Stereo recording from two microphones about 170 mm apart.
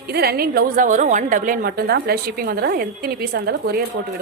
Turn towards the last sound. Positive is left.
turn(degrees=-65)  # may be behind; listen again after turning